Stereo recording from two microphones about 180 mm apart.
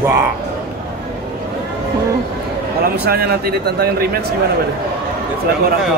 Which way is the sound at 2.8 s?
60° right (ahead or behind).